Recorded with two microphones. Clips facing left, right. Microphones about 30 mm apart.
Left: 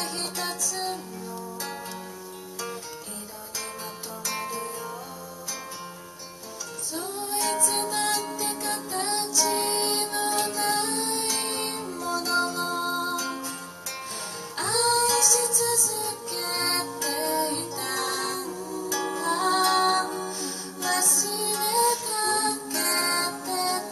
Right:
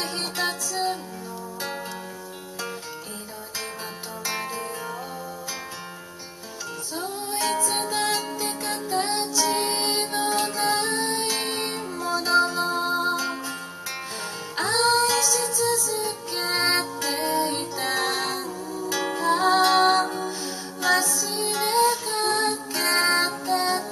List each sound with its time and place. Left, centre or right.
0.0 s music: right
4.3 s music: right
6.9 s music: centre
14.6 s music: right
19.1 s music: right